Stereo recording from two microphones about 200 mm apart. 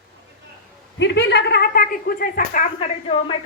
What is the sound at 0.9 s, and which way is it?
A woman's voice, 60° left (ahead or behind).